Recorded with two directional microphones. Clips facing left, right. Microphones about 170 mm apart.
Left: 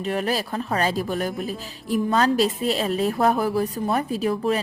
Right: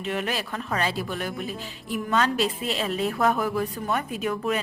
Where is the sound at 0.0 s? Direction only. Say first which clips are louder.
Left 4 dB; 35° left (ahead or behind).